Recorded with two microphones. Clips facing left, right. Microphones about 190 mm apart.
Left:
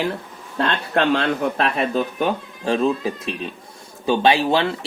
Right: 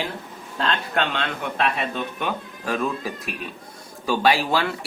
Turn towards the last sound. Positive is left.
turn(degrees=25)  # may be behind; listen again after turning